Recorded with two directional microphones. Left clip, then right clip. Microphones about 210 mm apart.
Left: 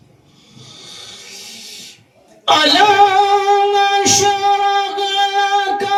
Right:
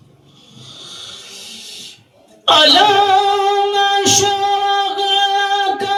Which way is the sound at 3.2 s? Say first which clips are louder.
Left 2 dB; 15° left (ahead or behind).